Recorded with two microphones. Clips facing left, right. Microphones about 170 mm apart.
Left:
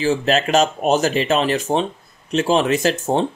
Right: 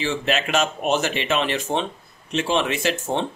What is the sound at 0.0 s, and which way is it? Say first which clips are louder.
Speech: left 6 dB; 40° left (ahead or behind).